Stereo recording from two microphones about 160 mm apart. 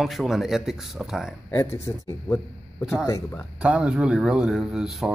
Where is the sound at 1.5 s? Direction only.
15° left (ahead or behind).